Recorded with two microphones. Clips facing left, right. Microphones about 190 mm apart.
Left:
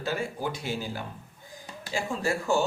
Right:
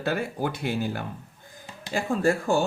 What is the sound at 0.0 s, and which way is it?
Speech, 60° right (ahead or behind).